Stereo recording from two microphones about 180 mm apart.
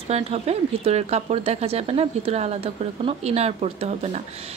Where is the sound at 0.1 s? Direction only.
35° right (ahead or behind).